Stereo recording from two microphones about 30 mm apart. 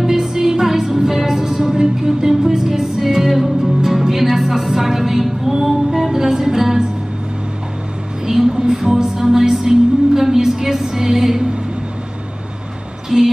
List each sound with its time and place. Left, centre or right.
0.0 s music: centre
8.3 s music: centre
13.1 s music: centre